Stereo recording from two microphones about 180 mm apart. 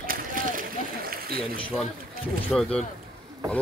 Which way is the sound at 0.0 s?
50° right (ahead or behind).